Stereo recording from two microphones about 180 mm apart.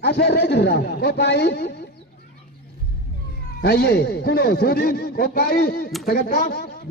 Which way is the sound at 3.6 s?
65° left (ahead or behind).